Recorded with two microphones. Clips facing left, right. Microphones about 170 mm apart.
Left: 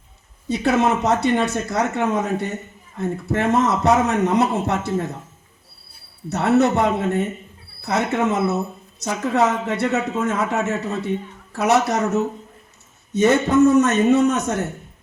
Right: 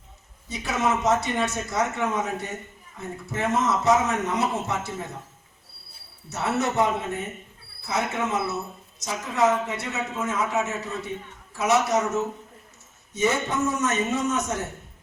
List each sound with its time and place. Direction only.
0.4 s a man's voice: 65° left (ahead or behind)
6.2 s a man's voice: 65° left (ahead or behind)
13.7 s a man's voice: 65° left (ahead or behind)